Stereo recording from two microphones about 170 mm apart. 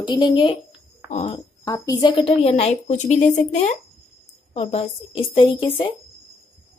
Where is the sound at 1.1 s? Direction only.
40° left (ahead or behind).